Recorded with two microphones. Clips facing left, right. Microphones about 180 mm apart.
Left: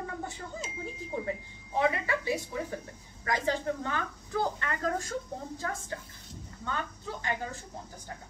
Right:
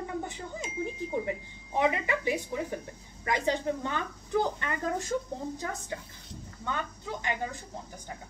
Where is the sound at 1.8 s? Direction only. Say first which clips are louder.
Right 1 dB; 20° right (ahead or behind).